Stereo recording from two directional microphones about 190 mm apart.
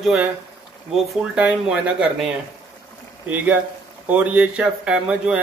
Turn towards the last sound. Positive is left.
turn(degrees=-5)  # may be behind; listen again after turning